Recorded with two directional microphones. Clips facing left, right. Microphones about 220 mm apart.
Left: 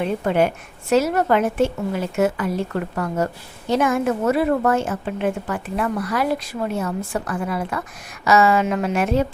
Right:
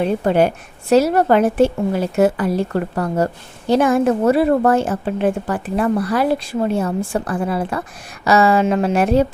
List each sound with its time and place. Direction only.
0.0 s a woman's voice: 35° right (ahead or behind)